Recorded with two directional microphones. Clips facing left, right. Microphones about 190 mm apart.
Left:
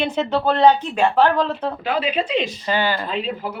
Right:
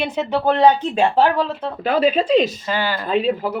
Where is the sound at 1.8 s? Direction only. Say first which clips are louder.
Right 7 dB; 40° right (ahead or behind).